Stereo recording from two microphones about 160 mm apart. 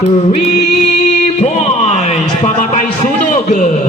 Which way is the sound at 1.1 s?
45° left (ahead or behind).